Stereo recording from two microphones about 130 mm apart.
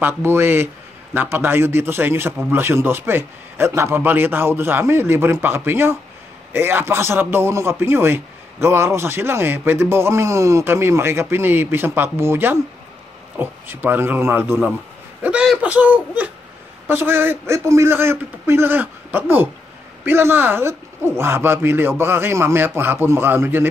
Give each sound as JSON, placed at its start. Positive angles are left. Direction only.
{"t": 0.0, "sound": "a man's voice", "side_deg": -20}